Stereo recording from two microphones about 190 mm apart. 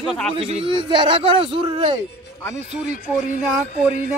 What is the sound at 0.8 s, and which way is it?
Speech, 25° right (ahead or behind).